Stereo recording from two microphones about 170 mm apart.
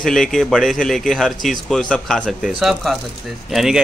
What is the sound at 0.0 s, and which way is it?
A man's voice, centre (ahead or behind).